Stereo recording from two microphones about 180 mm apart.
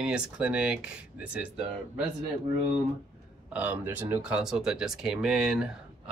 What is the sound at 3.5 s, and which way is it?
Speech, 10° right (ahead or behind).